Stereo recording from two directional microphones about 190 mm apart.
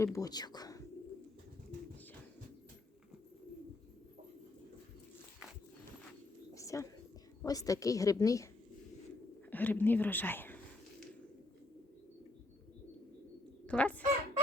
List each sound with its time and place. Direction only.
0.0 s speech: 15° left (ahead or behind)
6.5 s bird: 15° left (ahead or behind)
7.4 s a woman's voice: 20° left (ahead or behind)
9.5 s speech: 10° left (ahead or behind)
13.7 s speech: 5° left (ahead or behind)